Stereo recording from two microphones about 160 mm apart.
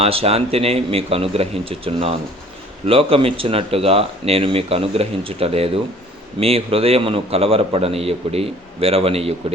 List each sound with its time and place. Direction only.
0.0 s speech: 40° right (ahead or behind)